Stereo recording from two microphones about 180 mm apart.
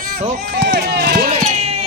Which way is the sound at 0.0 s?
50° right (ahead or behind).